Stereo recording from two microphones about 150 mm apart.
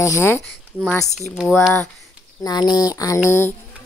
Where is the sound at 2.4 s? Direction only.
25° left (ahead or behind).